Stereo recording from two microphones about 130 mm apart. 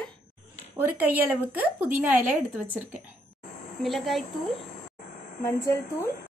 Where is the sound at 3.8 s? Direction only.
Centre (ahead or behind).